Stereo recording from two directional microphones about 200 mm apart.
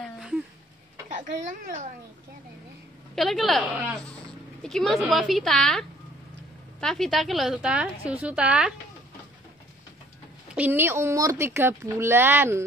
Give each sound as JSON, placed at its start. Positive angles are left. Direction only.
{"t": 0.0, "sound": "a sound", "side_deg": 0}
{"t": 1.1, "sound": "speech", "side_deg": -45}
{"t": 3.2, "sound": "a woman's voice", "side_deg": 0}
{"t": 10.5, "sound": "speech", "side_deg": -10}